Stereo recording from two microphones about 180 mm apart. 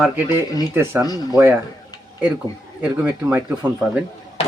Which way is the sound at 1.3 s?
15° right (ahead or behind).